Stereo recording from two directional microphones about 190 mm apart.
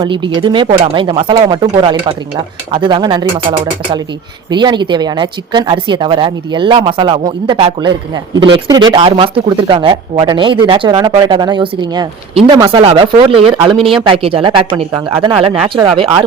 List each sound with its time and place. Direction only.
0.0 s speech: 20° right (ahead or behind)
4.5 s speech: 25° right (ahead or behind)